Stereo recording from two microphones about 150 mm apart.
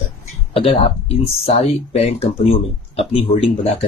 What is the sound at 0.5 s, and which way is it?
Speech, 40° left (ahead or behind).